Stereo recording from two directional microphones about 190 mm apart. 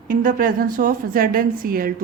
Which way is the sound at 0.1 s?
45° right (ahead or behind).